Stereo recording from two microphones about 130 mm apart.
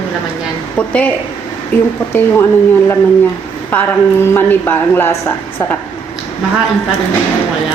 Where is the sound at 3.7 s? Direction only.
15° left (ahead or behind).